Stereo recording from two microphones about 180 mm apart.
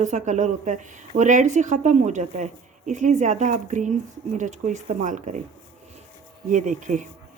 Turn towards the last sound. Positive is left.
turn(degrees=-45)  # may be behind; listen again after turning